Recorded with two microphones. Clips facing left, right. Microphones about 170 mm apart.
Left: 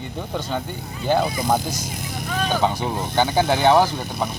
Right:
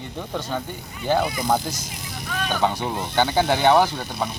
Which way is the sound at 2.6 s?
10° left (ahead or behind).